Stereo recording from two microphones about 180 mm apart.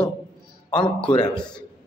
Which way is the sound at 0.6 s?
25° left (ahead or behind).